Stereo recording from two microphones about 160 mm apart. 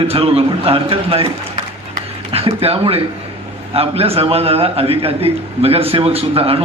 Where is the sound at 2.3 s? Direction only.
35° right (ahead or behind).